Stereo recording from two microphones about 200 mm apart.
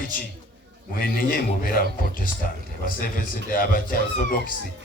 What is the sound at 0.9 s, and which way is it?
Speech, 45° left (ahead or behind).